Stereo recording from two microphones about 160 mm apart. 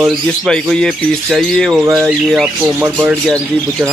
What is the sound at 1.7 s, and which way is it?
Speech, 10° right (ahead or behind).